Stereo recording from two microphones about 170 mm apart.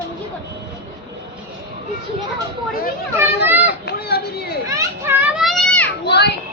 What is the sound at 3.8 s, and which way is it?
Speech, 70° left (ahead or behind).